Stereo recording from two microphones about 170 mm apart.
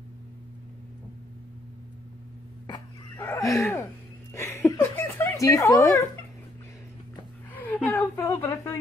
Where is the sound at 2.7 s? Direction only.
15° left (ahead or behind).